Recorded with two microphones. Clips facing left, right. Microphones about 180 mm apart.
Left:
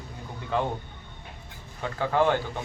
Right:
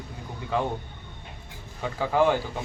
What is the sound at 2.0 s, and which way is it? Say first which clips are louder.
Speech: right 1 dB; 10° right (ahead or behind).